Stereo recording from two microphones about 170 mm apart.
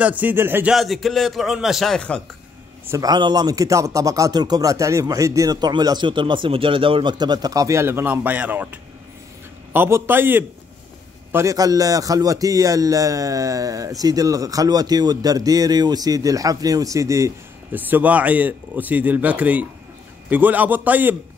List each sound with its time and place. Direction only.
0.0 s speech: 10° right (ahead or behind)
0.7 s a man's voice: centre (ahead or behind)
2.9 s a man's voice: 25° right (ahead or behind)
9.7 s a man's voice: 15° right (ahead or behind)